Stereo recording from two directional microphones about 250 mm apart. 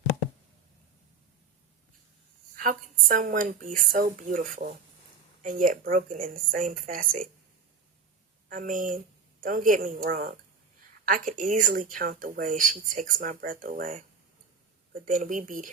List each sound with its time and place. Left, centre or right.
2.6 s speech: right
8.4 s speech: right